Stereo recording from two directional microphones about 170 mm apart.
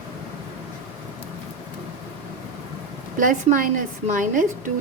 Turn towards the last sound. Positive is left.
turn(degrees=-50)  # may be behind; listen again after turning